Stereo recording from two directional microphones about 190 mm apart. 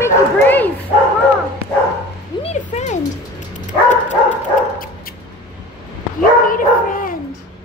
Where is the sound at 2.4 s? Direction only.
35° left (ahead or behind).